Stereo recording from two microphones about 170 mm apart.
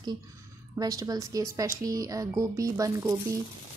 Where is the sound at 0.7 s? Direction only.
20° right (ahead or behind).